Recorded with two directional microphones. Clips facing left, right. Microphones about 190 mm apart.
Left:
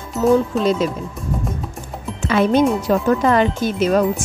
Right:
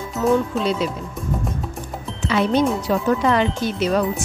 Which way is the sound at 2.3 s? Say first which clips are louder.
Left 3 dB; 50° left (ahead or behind).